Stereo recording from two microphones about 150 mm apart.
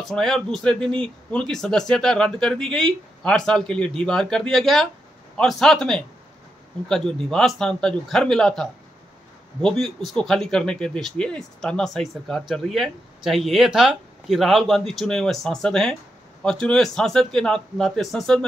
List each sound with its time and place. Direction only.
0.0 s speech: centre (ahead or behind)